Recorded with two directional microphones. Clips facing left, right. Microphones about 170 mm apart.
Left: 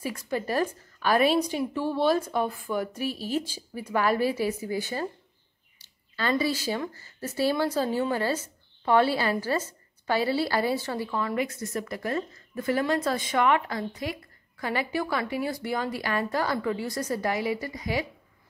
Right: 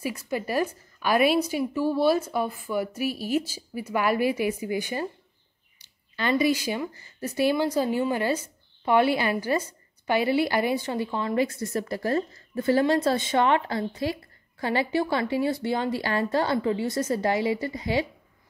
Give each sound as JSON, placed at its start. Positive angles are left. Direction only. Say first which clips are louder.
{"t": 0.0, "sound": "a woman's voice", "louder": "right 1 dB", "side_deg": -10}